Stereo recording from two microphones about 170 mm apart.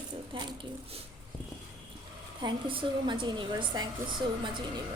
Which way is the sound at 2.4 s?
30° right (ahead or behind).